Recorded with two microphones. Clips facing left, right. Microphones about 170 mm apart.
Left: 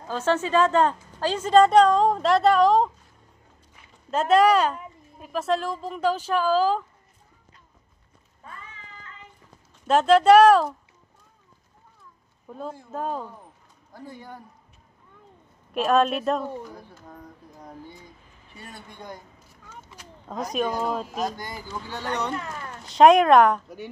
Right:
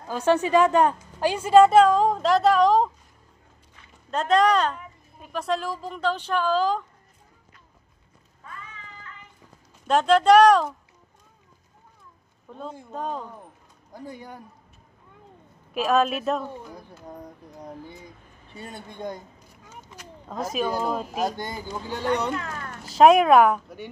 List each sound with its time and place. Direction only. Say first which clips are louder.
0.1 s a woman's voice: right 3 dB; 15° right (ahead or behind)
4.1 s a woman's voice: left 2 dB; 5° left (ahead or behind)
9.8 s a woman's voice: left 1 dB; 5° left (ahead or behind)
12.4 s a woman's voice: left 2 dB; 5° left (ahead or behind)
13.9 s speech: right 2 dB; 15° right (ahead or behind)
15.7 s a woman's voice: left 1 dB; centre (ahead or behind)
18.6 s speech: right 7 dB; 25° right (ahead or behind)
20.0 s speech: right 1 dB; 5° right (ahead or behind)
21.4 s a woman's voice: right 3 dB; 25° right (ahead or behind); by 23.9 s 5° right (ahead or behind)